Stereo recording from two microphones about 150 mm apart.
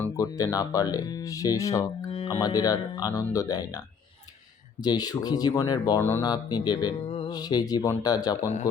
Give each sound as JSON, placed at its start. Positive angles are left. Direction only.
{"t": 0.0, "sound": "speech", "side_deg": 20}
{"t": 2.0, "sound": "music", "side_deg": 40}
{"t": 2.4, "sound": "speech", "side_deg": 25}
{"t": 6.0, "sound": "speech", "side_deg": 15}
{"t": 6.2, "sound": "speech", "side_deg": 25}